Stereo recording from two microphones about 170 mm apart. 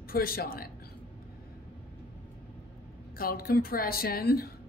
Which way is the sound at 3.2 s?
60° left (ahead or behind).